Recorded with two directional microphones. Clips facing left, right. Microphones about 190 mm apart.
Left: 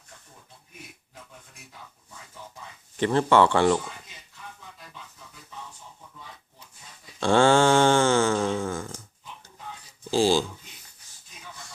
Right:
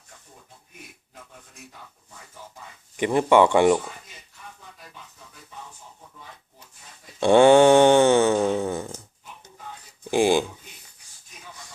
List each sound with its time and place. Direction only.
3.0 s speech: 15° right (ahead or behind)
7.2 s mantra: 20° right (ahead or behind)
10.1 s a sound: 20° right (ahead or behind)